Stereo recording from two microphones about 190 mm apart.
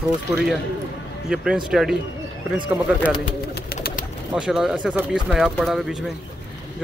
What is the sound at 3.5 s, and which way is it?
Pigeon, 50° left (ahead or behind).